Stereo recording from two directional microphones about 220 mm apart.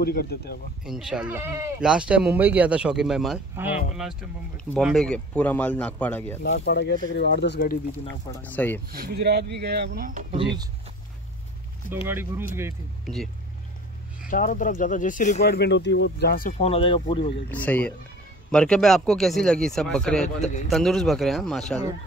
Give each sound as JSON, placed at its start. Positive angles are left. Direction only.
{"t": 0.0, "sound": "speech", "side_deg": 45}
{"t": 0.8, "sound": "speech", "side_deg": 0}
{"t": 6.4, "sound": "speech", "side_deg": 50}
{"t": 8.1, "sound": "speech", "side_deg": 10}
{"t": 8.9, "sound": "speech", "side_deg": -45}
{"t": 10.3, "sound": "speech", "side_deg": -20}
{"t": 12.1, "sound": "speech", "side_deg": -10}
{"t": 13.0, "sound": "speech", "side_deg": 0}
{"t": 14.3, "sound": "speech", "side_deg": 40}
{"t": 15.4, "sound": "speech", "side_deg": 50}
{"t": 17.5, "sound": "speech", "side_deg": 5}